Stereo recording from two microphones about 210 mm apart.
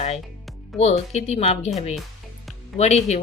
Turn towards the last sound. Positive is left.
turn(degrees=30)  # may be behind; listen again after turning